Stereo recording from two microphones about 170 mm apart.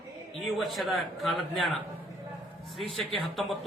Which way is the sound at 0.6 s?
Centre (ahead or behind).